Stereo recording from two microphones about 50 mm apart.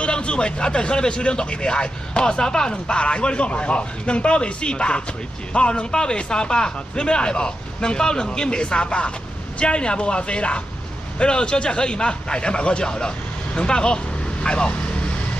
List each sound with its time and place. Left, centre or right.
0.0 s a man's voice: left